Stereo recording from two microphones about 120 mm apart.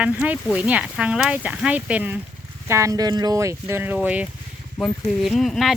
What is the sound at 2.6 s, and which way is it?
Speech, 25° right (ahead or behind).